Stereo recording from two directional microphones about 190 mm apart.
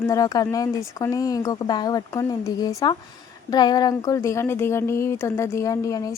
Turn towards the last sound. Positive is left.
turn(degrees=15)  # may be behind; listen again after turning